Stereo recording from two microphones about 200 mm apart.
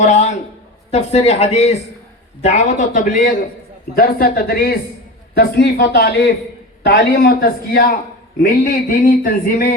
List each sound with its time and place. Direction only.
0.0 s speech: 35° left (ahead or behind)